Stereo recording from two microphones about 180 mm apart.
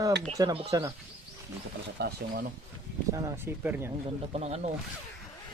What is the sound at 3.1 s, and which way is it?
Speech, 15° right (ahead or behind).